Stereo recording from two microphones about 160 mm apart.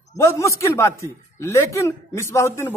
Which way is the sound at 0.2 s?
15° left (ahead or behind).